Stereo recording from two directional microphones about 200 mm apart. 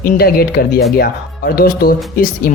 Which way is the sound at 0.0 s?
45° left (ahead or behind).